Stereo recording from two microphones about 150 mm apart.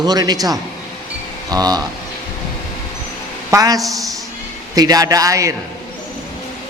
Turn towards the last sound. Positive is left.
turn(degrees=-20)  # may be behind; listen again after turning